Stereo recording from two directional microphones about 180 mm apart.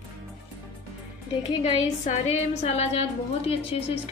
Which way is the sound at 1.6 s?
35° left (ahead or behind).